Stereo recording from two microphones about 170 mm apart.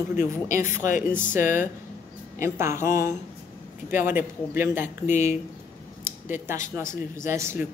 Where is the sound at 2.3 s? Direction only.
15° right (ahead or behind).